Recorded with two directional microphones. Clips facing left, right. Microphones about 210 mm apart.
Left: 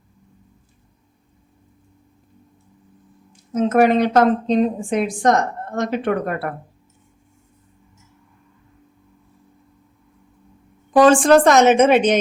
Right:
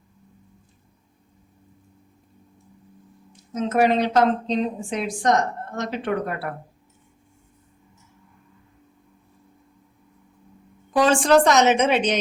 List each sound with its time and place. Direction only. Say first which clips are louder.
3.5 s a woman's voice: left 5 dB; 55° left (ahead or behind)
10.9 s a woman's voice: left 5 dB; 50° left (ahead or behind)